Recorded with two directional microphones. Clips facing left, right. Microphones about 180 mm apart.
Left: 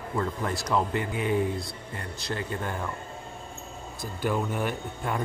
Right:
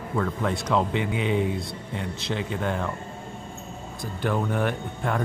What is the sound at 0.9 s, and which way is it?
Speech, 70° right (ahead or behind).